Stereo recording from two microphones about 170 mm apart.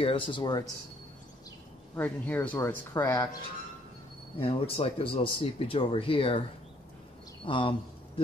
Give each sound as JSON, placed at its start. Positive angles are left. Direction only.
{"t": 0.0, "sound": "speech", "side_deg": 30}
{"t": 2.0, "sound": "speech", "side_deg": 10}
{"t": 4.4, "sound": "speech", "side_deg": 35}
{"t": 7.4, "sound": "speech", "side_deg": 30}